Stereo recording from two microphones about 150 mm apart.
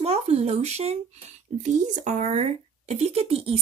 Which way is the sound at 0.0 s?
45° right (ahead or behind).